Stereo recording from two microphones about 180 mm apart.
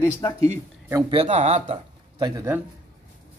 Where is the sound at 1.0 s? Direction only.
35° right (ahead or behind).